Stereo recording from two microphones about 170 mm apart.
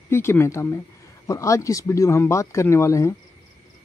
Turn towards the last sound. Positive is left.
turn(degrees=15)  # may be behind; listen again after turning